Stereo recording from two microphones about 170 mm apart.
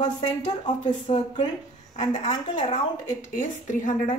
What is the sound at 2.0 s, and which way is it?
Speech, 25° left (ahead or behind).